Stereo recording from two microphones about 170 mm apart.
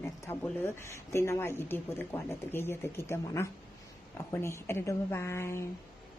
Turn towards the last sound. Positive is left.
turn(degrees=15)  # may be behind; listen again after turning